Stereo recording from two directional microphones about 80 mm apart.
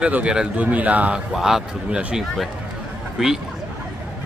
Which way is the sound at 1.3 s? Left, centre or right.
Centre.